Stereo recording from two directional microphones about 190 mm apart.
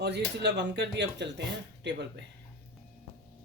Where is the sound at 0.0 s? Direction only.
65° right (ahead or behind).